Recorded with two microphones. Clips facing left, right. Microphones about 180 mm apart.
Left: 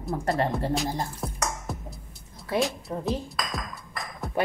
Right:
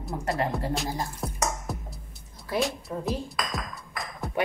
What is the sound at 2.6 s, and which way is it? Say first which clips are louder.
Ping: left 1 dB; centre (ahead or behind).